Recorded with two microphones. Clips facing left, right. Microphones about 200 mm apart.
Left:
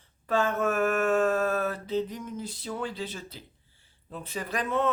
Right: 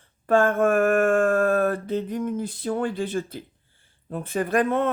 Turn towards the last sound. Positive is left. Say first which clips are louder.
# right 6 dB
turn(degrees=-55)  # may be behind; listen again after turning